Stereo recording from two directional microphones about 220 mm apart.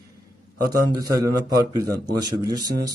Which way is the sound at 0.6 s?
15° right (ahead or behind).